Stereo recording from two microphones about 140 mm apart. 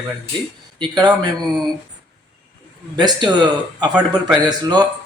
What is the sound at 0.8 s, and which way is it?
Speech, 30° right (ahead or behind).